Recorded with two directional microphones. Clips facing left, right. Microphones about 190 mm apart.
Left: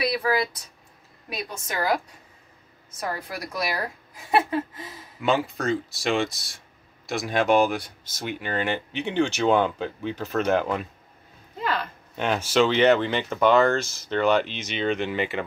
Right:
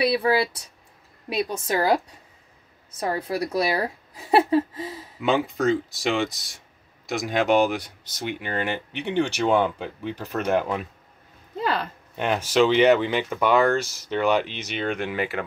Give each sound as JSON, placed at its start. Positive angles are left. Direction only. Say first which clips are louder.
{"t": 0.0, "sound": "a woman's voice", "louder": "right 3 dB", "side_deg": -30}
{"t": 3.0, "sound": "a woman's voice", "louder": "right 6 dB", "side_deg": -30}
{"t": 5.2, "sound": "speech", "louder": "right 2 dB", "side_deg": -15}
{"t": 8.0, "sound": "speech", "louder": "right 1 dB", "side_deg": 45}
{"t": 8.5, "sound": "speech", "louder": "left 3 dB", "side_deg": -10}
{"t": 11.6, "sound": "a sound", "louder": "right 2 dB", "side_deg": -35}
{"t": 12.2, "sound": "speech", "louder": "right 1 dB", "side_deg": -10}